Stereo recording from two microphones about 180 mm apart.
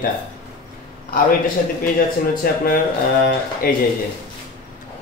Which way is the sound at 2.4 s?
55° left (ahead or behind).